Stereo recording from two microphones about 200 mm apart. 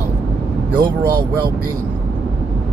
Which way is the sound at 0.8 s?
45° right (ahead or behind).